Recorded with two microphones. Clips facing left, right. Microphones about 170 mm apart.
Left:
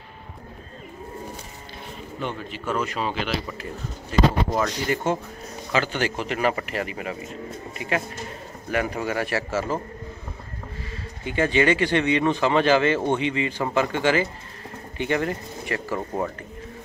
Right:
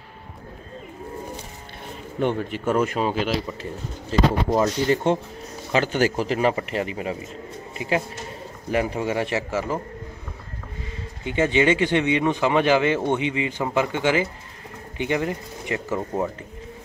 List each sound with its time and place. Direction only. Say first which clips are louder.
2.1 s speech: right 8 dB; 55° right (ahead or behind); by 3.3 s 40° right (ahead or behind)
4.6 s speech: right 4 dB; 30° right (ahead or behind)
5.7 s speech: right 4 dB; 40° right (ahead or behind); by 9.8 s 15° right (ahead or behind)
11.2 s speech: right 1 dB; 20° right (ahead or behind)
16.0 s speech: right 2 dB; 5° right (ahead or behind)